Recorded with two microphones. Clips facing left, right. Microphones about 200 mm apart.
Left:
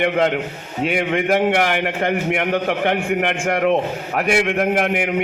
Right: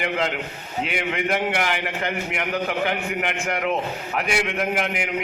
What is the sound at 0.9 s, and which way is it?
A man's voice, 50° left (ahead or behind).